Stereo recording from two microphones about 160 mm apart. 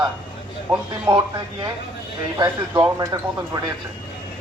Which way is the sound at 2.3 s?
20° right (ahead or behind).